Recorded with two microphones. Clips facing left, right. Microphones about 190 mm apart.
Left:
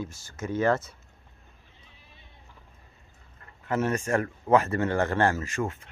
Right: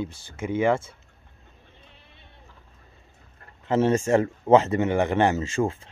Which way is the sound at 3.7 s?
25° right (ahead or behind).